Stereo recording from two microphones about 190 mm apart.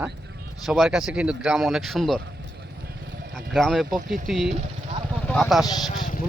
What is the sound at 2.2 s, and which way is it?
Vehicle, 55° right (ahead or behind).